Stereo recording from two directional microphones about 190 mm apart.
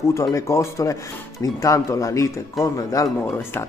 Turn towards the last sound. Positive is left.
turn(degrees=20)  # may be behind; listen again after turning